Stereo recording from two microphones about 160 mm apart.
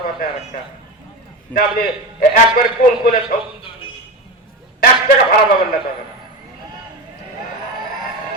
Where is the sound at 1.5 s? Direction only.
60° left (ahead or behind).